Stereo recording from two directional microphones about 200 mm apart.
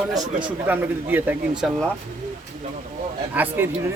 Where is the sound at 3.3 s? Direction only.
10° right (ahead or behind).